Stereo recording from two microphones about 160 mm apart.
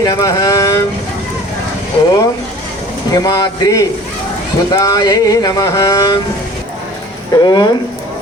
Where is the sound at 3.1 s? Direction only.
25° left (ahead or behind).